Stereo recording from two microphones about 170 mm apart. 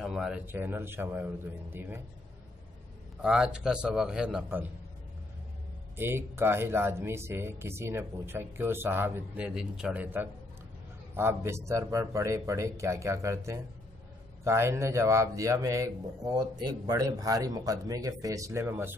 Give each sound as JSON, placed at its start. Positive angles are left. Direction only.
{"t": 0.0, "sound": "speech", "side_deg": -5}
{"t": 3.2, "sound": "a man's voice", "side_deg": -5}
{"t": 5.9, "sound": "a man's voice", "side_deg": -15}